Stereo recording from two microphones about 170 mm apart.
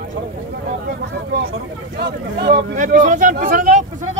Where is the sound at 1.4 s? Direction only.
70° right (ahead or behind).